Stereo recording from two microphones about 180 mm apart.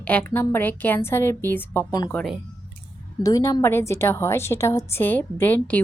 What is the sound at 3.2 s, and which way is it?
A woman's voice, 20° left (ahead or behind).